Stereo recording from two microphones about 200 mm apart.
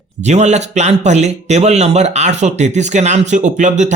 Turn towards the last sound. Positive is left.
turn(degrees=-35)  # may be behind; listen again after turning